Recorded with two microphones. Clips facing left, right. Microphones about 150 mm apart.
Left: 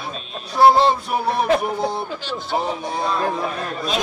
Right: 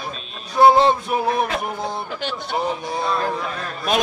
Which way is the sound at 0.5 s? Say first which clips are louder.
Even; centre (ahead or behind).